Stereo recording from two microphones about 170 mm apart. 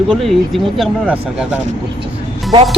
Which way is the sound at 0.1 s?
Centre (ahead or behind).